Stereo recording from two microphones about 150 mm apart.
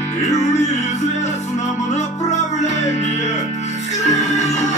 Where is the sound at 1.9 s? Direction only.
50° left (ahead or behind).